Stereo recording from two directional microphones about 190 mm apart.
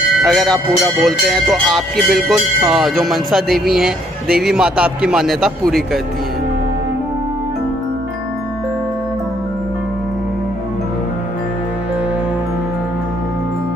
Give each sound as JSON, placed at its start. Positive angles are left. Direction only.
{"t": 0.2, "sound": "speech", "side_deg": 0}